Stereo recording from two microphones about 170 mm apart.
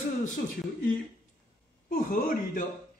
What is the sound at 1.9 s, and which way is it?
Speech, 50° left (ahead or behind).